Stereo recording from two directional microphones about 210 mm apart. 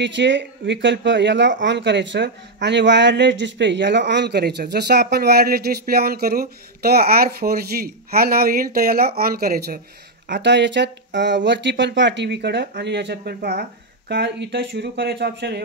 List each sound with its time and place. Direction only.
0.0 s speech: 60° right (ahead or behind)
10.2 s speech: 55° right (ahead or behind)